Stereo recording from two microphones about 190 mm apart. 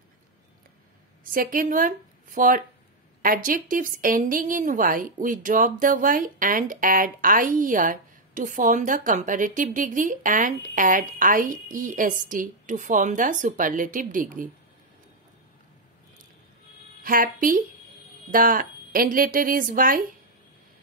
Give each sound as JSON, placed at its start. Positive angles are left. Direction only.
{"t": 1.3, "sound": "a woman's voice", "side_deg": -45}
{"t": 17.0, "sound": "a woman's voice", "side_deg": -50}